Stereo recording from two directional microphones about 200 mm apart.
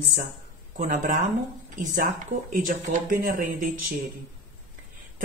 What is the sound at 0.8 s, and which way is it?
Speech, 40° right (ahead or behind).